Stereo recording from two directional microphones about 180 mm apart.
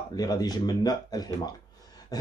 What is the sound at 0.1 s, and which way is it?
Speech, 20° left (ahead or behind).